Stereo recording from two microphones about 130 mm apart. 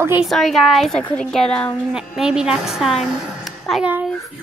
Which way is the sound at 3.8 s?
10° right (ahead or behind).